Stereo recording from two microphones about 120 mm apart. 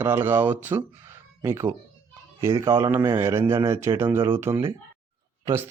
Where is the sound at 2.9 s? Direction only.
25° right (ahead or behind).